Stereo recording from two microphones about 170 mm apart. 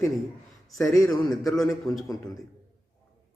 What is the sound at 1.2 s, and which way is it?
A man's voice, 25° left (ahead or behind).